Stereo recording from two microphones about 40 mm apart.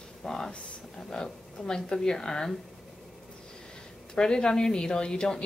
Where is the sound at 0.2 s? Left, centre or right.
Centre.